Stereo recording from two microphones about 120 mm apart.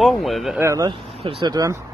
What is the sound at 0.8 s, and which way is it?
Speech, 40° right (ahead or behind).